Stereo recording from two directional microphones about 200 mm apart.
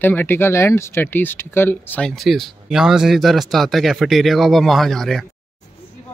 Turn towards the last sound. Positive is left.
turn(degrees=0)  # may be behind; listen again after turning